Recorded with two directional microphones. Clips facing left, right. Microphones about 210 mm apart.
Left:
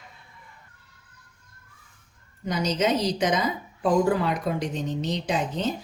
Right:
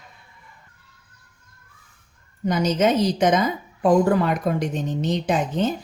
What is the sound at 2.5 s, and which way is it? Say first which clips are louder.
Speech: right 5 dB; 50° right (ahead or behind).